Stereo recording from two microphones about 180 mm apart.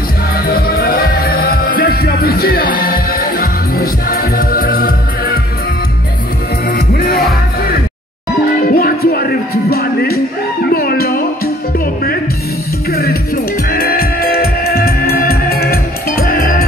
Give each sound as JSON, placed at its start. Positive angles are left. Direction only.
{"t": 0.7, "sound": "music", "side_deg": 60}
{"t": 6.7, "sound": "music", "side_deg": 55}
{"t": 8.6, "sound": "music", "side_deg": 55}
{"t": 12.9, "sound": "music", "side_deg": 60}